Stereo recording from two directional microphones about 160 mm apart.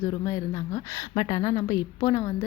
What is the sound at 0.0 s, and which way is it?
A woman's voice, 20° left (ahead or behind).